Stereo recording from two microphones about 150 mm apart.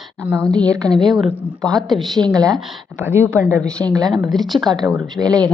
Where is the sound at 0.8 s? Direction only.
5° left (ahead or behind).